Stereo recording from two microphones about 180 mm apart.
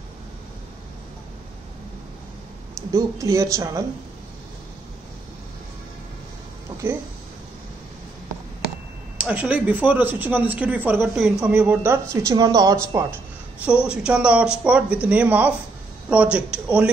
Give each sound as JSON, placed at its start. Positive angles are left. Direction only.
{"t": 2.9, "sound": "speech", "side_deg": -15}
{"t": 9.2, "sound": "speech", "side_deg": -5}
{"t": 13.7, "sound": "speech", "side_deg": -5}